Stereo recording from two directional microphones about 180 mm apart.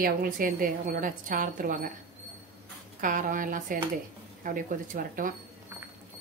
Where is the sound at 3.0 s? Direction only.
45° right (ahead or behind).